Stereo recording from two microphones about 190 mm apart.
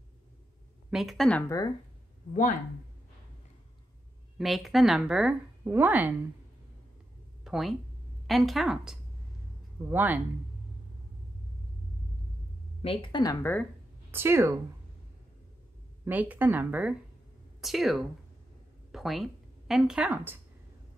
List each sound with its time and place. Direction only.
0.8 s speech: centre (ahead or behind)
4.4 s speech: centre (ahead or behind)
7.4 s speech: centre (ahead or behind)
12.8 s speech: 30° left (ahead or behind); by 13.7 s 10° left (ahead or behind)
14.1 s speech: 10° right (ahead or behind)
16.1 s speech: 10° right (ahead or behind)